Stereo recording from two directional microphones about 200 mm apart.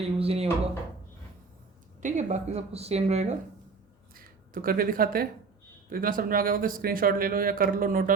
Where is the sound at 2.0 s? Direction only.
35° right (ahead or behind).